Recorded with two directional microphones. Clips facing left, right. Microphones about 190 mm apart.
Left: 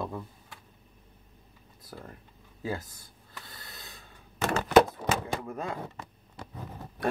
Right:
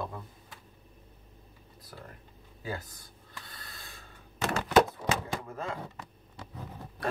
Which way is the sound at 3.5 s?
25° left (ahead or behind).